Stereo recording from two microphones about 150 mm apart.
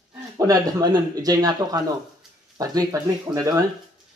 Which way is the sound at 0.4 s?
25° right (ahead or behind).